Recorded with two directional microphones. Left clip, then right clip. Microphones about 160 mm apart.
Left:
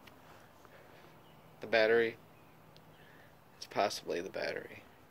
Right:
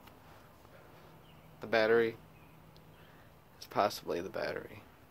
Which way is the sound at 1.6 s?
30° right (ahead or behind).